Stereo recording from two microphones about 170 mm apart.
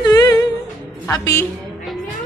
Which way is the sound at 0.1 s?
20° left (ahead or behind).